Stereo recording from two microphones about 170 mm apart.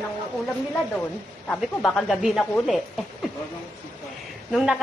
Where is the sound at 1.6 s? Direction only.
Centre (ahead or behind).